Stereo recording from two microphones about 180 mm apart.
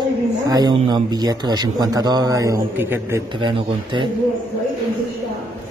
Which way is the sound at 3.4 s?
25° right (ahead or behind).